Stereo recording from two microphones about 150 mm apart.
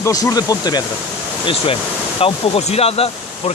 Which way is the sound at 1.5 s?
40° left (ahead or behind).